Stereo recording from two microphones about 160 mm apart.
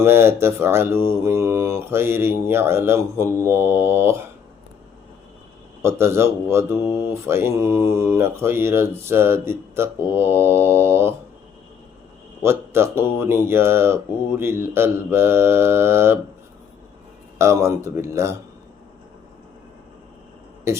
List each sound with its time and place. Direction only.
0.0 s mantra: 15° right (ahead or behind)
5.8 s mantra: 15° right (ahead or behind)
12.4 s mantra: 15° right (ahead or behind)
17.3 s mantra: 20° right (ahead or behind)
20.7 s a man's voice: 15° right (ahead or behind)